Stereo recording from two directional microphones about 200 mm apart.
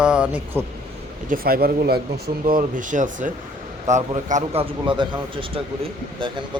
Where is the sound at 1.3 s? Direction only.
50° right (ahead or behind).